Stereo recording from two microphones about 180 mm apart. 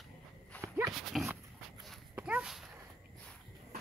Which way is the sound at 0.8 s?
Centre (ahead or behind).